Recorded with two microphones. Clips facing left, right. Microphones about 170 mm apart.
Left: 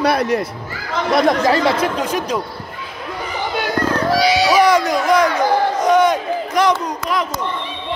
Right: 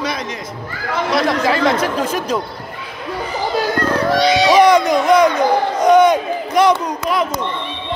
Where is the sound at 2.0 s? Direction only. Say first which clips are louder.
Right 1 dB; 15° left (ahead or behind).